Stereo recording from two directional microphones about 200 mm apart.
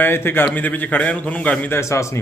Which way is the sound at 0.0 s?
10° left (ahead or behind).